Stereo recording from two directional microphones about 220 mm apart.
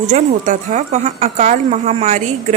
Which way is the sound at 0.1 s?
30° right (ahead or behind).